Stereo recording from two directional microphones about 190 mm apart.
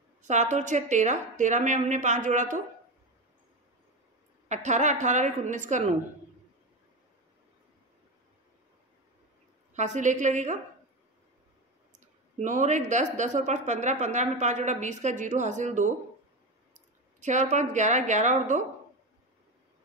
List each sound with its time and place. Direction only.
0.2 s a woman's voice: 40° right (ahead or behind)
4.5 s a woman's voice: 40° right (ahead or behind)
9.8 s a woman's voice: 40° right (ahead or behind)
12.4 s a woman's voice: 40° right (ahead or behind)
17.2 s a woman's voice: 40° right (ahead or behind)